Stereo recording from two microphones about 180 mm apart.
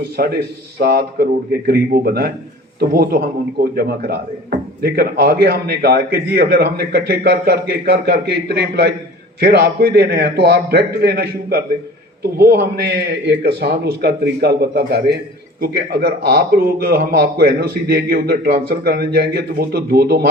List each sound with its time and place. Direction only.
0.8 s a man's voice: 60° right (ahead or behind)